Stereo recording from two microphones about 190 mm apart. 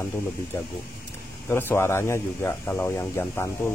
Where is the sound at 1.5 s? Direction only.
15° left (ahead or behind).